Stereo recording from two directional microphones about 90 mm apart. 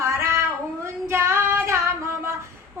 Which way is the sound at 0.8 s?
30° right (ahead or behind).